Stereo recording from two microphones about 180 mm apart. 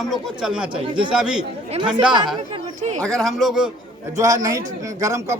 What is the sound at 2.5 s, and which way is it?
Speech, 40° right (ahead or behind).